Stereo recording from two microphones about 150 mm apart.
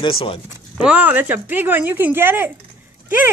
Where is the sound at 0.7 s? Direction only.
10° right (ahead or behind).